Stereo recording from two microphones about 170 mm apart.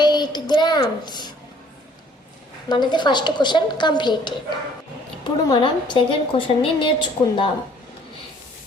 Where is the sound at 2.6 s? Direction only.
25° left (ahead or behind).